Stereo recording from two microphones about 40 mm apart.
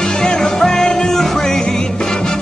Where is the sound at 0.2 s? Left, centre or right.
Centre.